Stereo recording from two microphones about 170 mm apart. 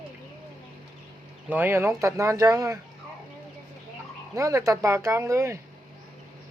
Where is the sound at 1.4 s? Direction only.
10° right (ahead or behind).